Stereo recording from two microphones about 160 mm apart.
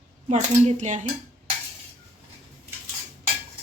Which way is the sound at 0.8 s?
45° right (ahead or behind).